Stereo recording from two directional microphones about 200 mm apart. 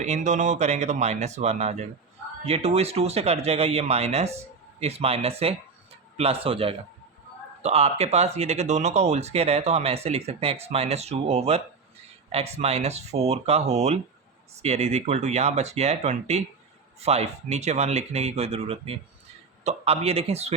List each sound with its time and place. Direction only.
0.0 s speech: 35° right (ahead or behind)